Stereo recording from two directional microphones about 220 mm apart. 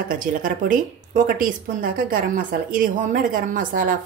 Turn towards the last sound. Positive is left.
turn(degrees=-40)  # may be behind; listen again after turning